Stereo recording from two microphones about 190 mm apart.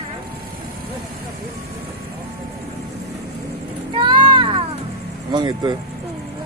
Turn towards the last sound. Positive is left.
turn(degrees=-25)  # may be behind; listen again after turning